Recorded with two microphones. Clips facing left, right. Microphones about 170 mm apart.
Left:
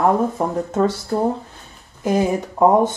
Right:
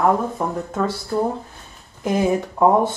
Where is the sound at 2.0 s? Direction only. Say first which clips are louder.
Left 1 dB; 15° left (ahead or behind).